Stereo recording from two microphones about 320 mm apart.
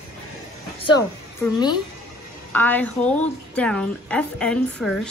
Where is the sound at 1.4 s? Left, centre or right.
Centre.